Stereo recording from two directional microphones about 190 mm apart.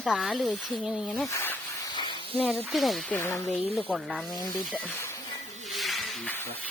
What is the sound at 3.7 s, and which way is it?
Speech, 5° right (ahead or behind).